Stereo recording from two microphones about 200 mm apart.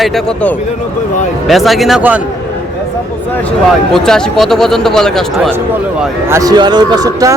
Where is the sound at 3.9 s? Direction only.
Centre (ahead or behind).